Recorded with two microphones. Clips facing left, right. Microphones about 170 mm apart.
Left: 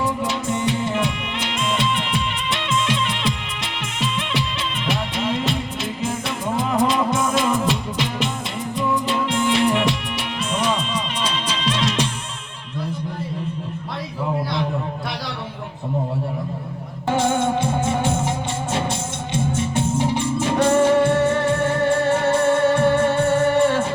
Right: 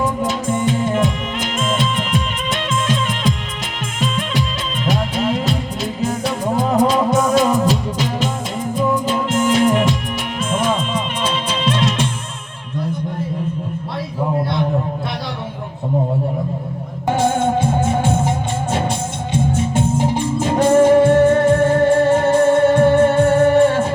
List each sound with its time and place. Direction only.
0.2 s music: 45° right (ahead or behind)
17.2 s music: 50° right (ahead or behind)
19.7 s music: 50° right (ahead or behind)